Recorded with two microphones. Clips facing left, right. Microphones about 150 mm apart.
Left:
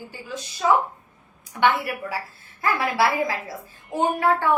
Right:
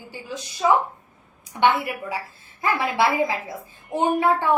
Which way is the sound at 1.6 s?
20° right (ahead or behind).